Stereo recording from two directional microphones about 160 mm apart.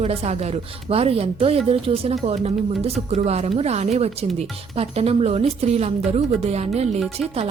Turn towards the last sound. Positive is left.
turn(degrees=-40)  # may be behind; listen again after turning